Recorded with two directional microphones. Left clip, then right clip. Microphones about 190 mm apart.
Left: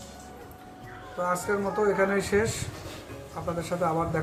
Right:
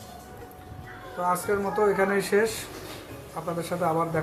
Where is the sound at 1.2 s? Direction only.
Centre (ahead or behind).